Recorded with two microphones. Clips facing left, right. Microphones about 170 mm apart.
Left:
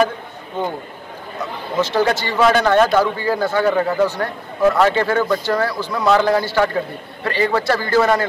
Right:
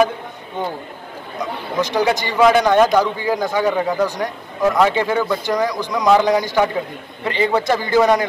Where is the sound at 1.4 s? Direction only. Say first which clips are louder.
Even; 15° right (ahead or behind).